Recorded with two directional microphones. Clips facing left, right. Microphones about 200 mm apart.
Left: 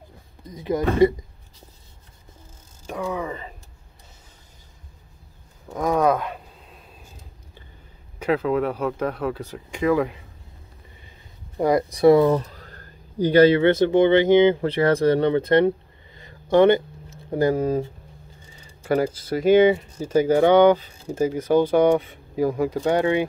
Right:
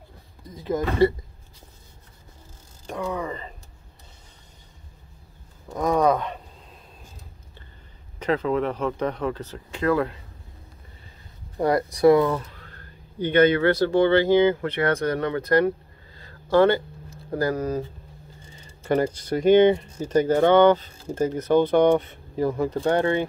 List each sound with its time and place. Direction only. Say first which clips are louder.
0.5 s speech: left 3 dB; 15° left (ahead or behind)
2.9 s mechanisms: left 1 dB; 5° left (ahead or behind)
5.7 s a sound: even; 5° left (ahead or behind)
8.2 s speech: left 2 dB; 5° left (ahead or behind)
11.5 s speech: left 2 dB; 15° left (ahead or behind)
16.2 s a sound: left 2 dB; 20° left (ahead or behind)
18.7 s speech: left 1 dB; 5° left (ahead or behind)